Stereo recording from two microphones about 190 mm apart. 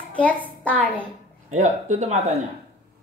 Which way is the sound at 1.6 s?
40° right (ahead or behind).